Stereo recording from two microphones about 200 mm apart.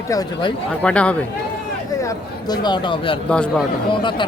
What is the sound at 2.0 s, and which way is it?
Speech, 20° left (ahead or behind).